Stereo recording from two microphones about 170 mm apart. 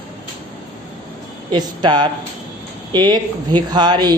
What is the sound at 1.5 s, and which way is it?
A woman's voice, 25° right (ahead or behind).